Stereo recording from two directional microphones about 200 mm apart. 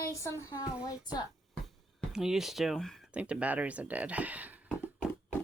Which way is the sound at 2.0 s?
Centre (ahead or behind).